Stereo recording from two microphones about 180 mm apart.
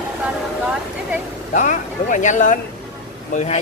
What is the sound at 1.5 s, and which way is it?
Speech, 45° left (ahead or behind).